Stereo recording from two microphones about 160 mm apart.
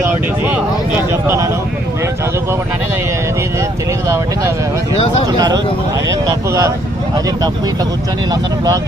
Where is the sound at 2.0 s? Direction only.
15° right (ahead or behind).